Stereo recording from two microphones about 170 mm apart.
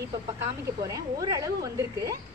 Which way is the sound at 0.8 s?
20° right (ahead or behind).